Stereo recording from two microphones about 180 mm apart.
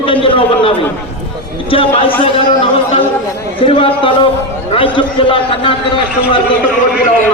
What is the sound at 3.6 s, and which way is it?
A man's voice, 30° left (ahead or behind).